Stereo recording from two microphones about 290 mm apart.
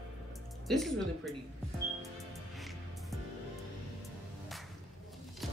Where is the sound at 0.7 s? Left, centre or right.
Centre.